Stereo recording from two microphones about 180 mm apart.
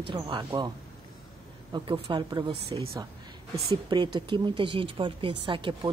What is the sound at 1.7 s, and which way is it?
Speech, 30° right (ahead or behind).